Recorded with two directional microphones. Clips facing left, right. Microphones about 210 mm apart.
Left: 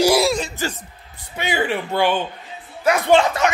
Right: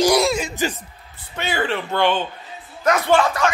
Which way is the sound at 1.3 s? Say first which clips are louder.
Left 1 dB; 15° left (ahead or behind).